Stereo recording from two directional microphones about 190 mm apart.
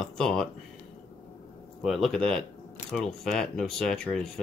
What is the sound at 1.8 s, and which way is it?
Speech, centre (ahead or behind).